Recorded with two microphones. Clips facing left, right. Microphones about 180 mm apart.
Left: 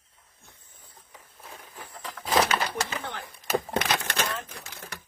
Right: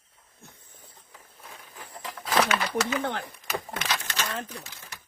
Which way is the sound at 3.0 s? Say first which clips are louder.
Right 7 dB; 60° right (ahead or behind).